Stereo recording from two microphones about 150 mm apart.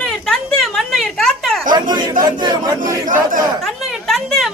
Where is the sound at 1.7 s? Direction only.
30° right (ahead or behind).